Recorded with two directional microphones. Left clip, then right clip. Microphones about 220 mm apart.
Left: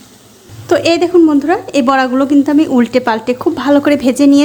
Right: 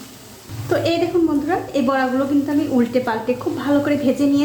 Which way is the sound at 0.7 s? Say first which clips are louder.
Left 8 dB; 45° left (ahead or behind).